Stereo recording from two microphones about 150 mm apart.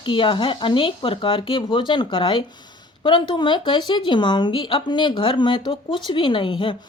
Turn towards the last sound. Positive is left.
turn(degrees=35)  # may be behind; listen again after turning